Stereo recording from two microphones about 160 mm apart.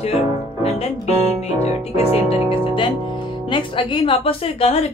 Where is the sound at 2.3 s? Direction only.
30° left (ahead or behind).